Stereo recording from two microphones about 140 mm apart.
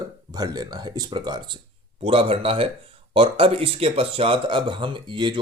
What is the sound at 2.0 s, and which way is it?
Speech, 40° right (ahead or behind).